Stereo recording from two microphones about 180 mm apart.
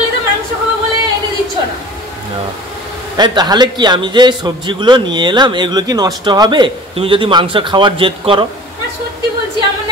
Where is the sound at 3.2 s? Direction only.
25° right (ahead or behind).